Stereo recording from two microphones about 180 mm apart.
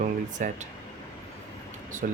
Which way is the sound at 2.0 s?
55° right (ahead or behind).